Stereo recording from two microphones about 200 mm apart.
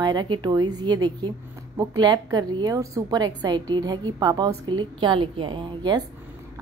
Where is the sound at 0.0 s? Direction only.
20° right (ahead or behind).